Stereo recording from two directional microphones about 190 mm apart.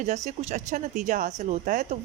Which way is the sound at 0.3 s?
40° right (ahead or behind).